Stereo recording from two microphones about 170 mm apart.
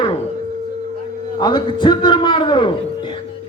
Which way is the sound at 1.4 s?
25° left (ahead or behind).